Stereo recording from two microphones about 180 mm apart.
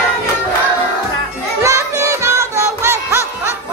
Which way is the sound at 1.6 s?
15° right (ahead or behind).